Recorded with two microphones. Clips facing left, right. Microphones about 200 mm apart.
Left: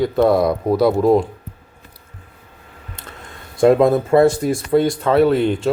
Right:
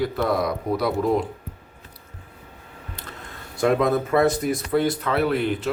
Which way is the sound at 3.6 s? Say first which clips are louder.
Left 7 dB; 25° left (ahead or behind).